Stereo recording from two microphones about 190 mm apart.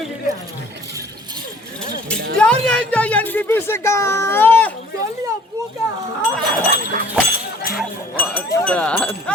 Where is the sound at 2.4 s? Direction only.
5° left (ahead or behind).